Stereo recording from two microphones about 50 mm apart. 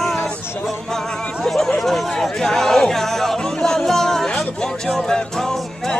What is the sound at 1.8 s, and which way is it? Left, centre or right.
Music, centre.